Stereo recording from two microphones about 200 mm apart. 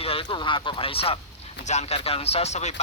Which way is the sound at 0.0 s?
25° left (ahead or behind).